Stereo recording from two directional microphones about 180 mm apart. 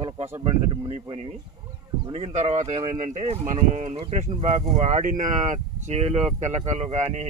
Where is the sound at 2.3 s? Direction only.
40° right (ahead or behind).